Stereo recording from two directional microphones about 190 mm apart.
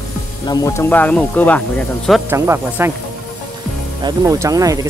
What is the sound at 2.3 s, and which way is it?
Speech, 10° right (ahead or behind).